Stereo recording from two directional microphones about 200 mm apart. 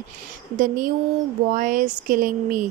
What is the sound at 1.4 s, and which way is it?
Speech, 45° right (ahead or behind).